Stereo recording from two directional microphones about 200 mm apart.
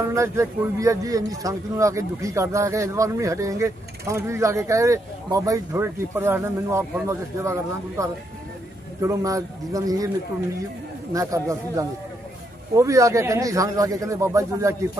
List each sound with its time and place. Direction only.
0.0 s speech: 15° right (ahead or behind)
11.1 s speech: 15° right (ahead or behind)